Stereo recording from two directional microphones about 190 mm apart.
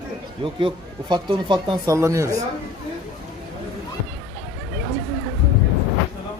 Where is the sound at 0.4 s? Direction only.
25° right (ahead or behind).